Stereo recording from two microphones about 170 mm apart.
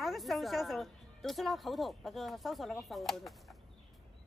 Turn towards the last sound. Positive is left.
turn(degrees=0)  # may be behind; listen again after turning